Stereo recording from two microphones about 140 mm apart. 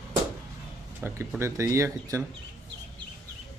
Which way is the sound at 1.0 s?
20° right (ahead or behind).